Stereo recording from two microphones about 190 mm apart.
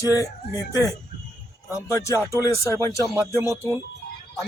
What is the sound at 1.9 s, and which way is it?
Speech, 15° left (ahead or behind).